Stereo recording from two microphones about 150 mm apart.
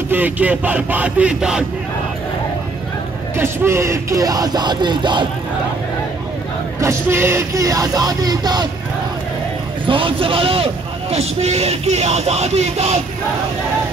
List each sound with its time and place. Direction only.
0.1 s speech: 10° right (ahead or behind)
3.3 s speech: 15° right (ahead or behind)
6.8 s speech: 15° right (ahead or behind)
9.8 s a man's voice: 35° right (ahead or behind)